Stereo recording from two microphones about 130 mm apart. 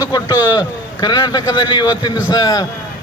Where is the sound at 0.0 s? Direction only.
30° left (ahead or behind).